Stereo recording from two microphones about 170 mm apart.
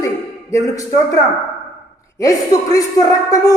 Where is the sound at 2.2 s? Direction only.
20° left (ahead or behind).